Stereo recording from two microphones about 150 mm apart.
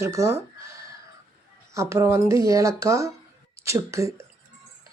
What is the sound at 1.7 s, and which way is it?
Speech, 20° right (ahead or behind).